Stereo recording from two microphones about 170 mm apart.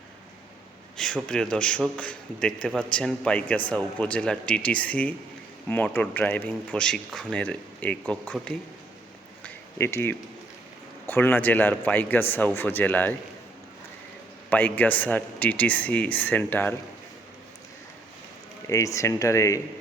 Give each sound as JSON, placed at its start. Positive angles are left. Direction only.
{"t": 0.9, "sound": "a man's voice", "side_deg": 5}
{"t": 9.4, "sound": "a sound", "side_deg": 15}
{"t": 11.0, "sound": "speech", "side_deg": 15}
{"t": 14.5, "sound": "speech", "side_deg": 10}
{"t": 18.7, "sound": "speech", "side_deg": 20}